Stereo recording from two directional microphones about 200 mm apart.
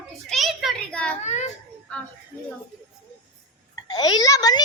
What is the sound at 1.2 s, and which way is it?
Children playing, 35° left (ahead or behind).